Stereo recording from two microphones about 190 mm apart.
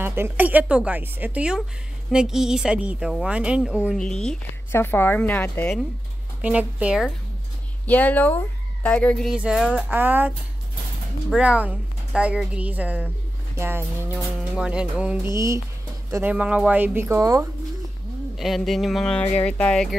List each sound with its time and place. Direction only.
0.0 s a woman's voice: 10° right (ahead or behind); by 5.8 s 10° left (ahead or behind)
6.4 s a woman's voice: 5° right (ahead or behind)
7.8 s a woman's voice: 10° left (ahead or behind); by 17.5 s 15° right (ahead or behind)
18.3 s speech: centre (ahead or behind)